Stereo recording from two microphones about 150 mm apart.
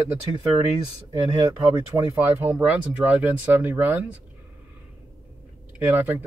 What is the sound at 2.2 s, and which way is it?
Speech, 10° right (ahead or behind).